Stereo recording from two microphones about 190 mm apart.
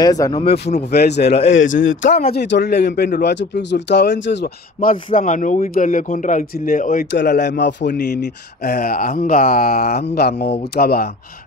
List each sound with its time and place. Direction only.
0.0 s speech: 20° left (ahead or behind)
0.7 s speech: 55° left (ahead or behind)
1.5 s speech: 90° left
2.0 s speech: 40° left (ahead or behind)
2.3 s speech: 60° left (ahead or behind)
4.7 s a man's voice: 45° left (ahead or behind)
7.1 s speech: 65° left (ahead or behind)
8.6 s a man's voice: 50° left (ahead or behind)